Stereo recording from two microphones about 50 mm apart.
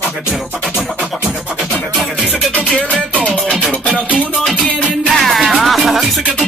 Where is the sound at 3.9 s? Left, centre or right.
Right.